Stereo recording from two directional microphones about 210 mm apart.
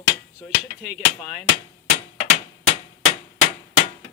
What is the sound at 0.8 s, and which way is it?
Speech, centre (ahead or behind).